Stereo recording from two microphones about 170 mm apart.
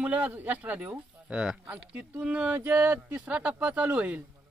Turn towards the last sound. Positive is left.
turn(degrees=-10)  # may be behind; listen again after turning